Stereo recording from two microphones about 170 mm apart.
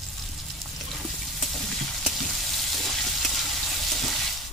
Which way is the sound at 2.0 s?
Centre (ahead or behind).